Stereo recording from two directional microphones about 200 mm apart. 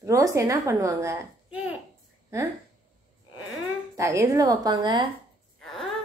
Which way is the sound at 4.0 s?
15° right (ahead or behind).